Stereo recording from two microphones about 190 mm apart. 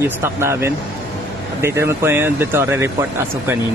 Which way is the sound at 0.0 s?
15° right (ahead or behind).